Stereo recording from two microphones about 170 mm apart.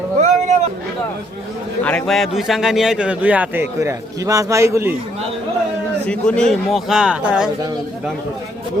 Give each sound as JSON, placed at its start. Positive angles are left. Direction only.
{"t": 0.2, "sound": "a sound", "side_deg": -45}
{"t": 1.8, "sound": "a man's voice", "side_deg": 10}
{"t": 6.1, "sound": "a man's voice", "side_deg": 5}